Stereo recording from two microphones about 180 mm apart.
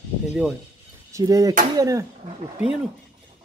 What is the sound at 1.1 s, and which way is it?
Speech, 20° right (ahead or behind).